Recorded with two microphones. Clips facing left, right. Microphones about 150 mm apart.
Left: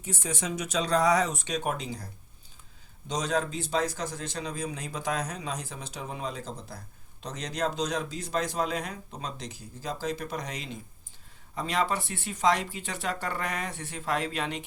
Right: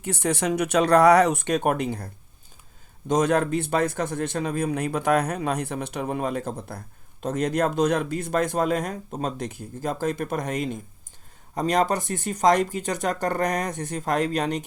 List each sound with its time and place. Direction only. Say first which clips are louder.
0.0 s a man's voice: right 9 dB; 65° right (ahead or behind)
3.1 s a man's voice: right 8 dB; 55° right (ahead or behind)